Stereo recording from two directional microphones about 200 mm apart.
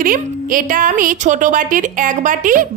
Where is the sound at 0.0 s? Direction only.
45° right (ahead or behind).